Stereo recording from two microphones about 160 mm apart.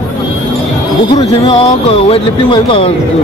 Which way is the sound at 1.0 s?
30° left (ahead or behind).